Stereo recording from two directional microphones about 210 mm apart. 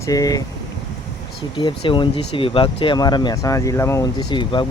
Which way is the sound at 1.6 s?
25° left (ahead or behind).